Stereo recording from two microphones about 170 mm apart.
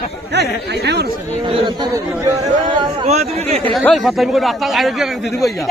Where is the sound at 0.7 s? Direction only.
80° right.